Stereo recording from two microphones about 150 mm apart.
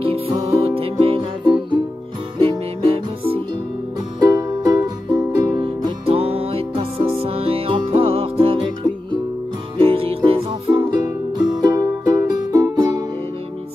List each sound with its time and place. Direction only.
0.0 s music: 40° right (ahead or behind)
4.2 s music: 25° right (ahead or behind)
5.6 s music: 35° right (ahead or behind)
10.7 s music: 25° right (ahead or behind)